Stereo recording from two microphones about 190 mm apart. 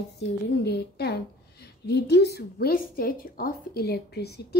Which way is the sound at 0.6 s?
60° left (ahead or behind).